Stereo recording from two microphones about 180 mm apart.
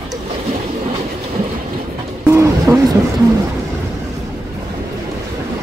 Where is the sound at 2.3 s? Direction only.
15° right (ahead or behind).